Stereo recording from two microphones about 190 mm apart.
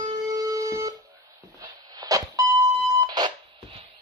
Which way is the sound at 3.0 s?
20° right (ahead or behind).